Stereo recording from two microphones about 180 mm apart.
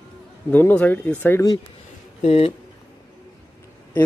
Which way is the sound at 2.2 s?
35° left (ahead or behind).